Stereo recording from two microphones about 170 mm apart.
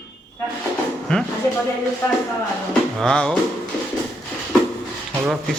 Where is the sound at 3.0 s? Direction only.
5° left (ahead or behind).